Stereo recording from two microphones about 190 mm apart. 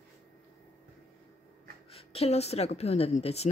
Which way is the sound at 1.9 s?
30° left (ahead or behind).